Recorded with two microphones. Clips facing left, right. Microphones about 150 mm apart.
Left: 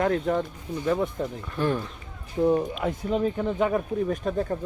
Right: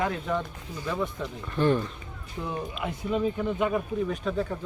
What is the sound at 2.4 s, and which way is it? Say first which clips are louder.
Speech: left 10 dB; 45° left (ahead or behind).